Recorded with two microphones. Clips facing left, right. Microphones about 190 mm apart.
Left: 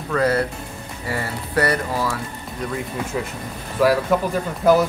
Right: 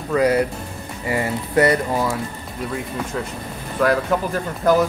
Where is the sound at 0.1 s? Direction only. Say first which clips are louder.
Right 2 dB; 15° right (ahead or behind).